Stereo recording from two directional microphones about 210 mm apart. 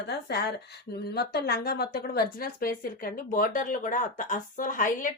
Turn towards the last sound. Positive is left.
turn(degrees=40)  # may be behind; listen again after turning